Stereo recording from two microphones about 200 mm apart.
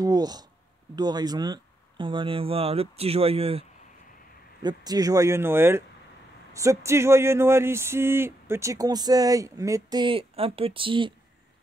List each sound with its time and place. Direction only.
0.0 s speech: 20° right (ahead or behind)
4.6 s speech: 20° right (ahead or behind)